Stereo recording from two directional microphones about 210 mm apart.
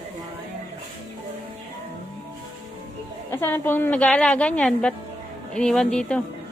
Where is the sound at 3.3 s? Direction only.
10° left (ahead or behind).